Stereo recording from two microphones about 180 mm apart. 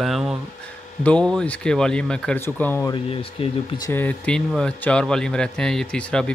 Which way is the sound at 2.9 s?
30° left (ahead or behind).